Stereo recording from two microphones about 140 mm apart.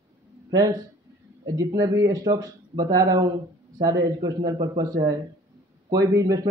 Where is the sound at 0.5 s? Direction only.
30° right (ahead or behind).